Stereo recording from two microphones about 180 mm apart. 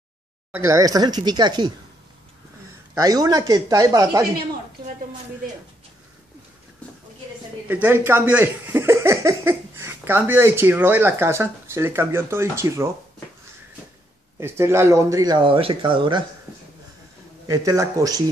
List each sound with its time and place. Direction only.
0.5 s speech: 15° right (ahead or behind)
2.9 s speech: 20° right (ahead or behind)
7.6 s speech: 10° right (ahead or behind)
14.4 s speech: 15° right (ahead or behind)
17.5 s speech: 20° right (ahead or behind)